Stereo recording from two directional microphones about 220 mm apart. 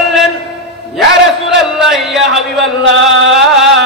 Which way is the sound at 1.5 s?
Centre (ahead or behind).